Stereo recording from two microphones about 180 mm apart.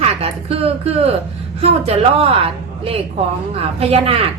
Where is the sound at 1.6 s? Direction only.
35° right (ahead or behind).